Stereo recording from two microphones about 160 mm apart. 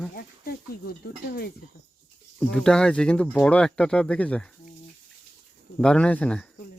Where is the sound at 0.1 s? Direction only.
70° left (ahead or behind).